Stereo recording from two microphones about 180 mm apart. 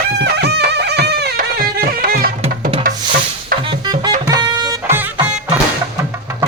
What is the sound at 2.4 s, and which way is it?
Music, 30° right (ahead or behind).